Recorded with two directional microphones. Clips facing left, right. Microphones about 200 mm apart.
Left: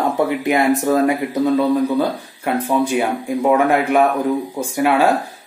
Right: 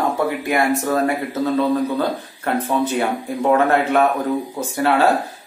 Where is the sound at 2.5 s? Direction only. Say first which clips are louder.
Left 2 dB; 10° left (ahead or behind).